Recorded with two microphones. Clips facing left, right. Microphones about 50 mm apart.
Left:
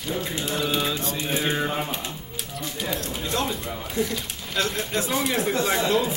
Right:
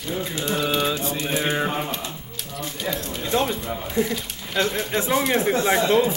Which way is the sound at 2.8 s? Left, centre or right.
Centre.